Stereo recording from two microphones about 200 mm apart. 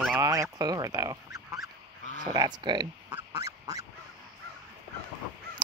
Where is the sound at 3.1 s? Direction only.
15° right (ahead or behind).